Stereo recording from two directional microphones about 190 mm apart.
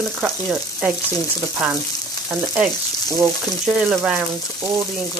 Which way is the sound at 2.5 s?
10° right (ahead or behind).